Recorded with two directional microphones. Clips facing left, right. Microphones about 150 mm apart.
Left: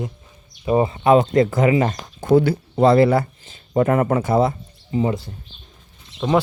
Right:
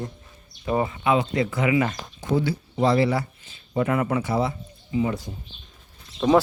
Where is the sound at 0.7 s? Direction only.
25° left (ahead or behind).